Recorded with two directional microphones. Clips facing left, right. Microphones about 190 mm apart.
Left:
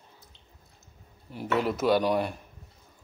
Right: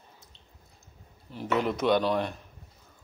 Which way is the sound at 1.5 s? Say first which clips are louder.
Left 1 dB; 5° left (ahead or behind).